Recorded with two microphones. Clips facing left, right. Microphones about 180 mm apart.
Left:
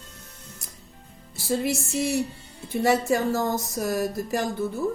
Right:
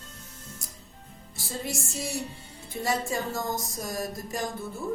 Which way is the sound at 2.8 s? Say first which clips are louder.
Left 7 dB; 65° left (ahead or behind).